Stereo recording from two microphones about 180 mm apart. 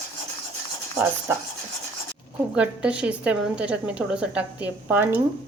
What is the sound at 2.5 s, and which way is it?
A woman's voice, 5° right (ahead or behind).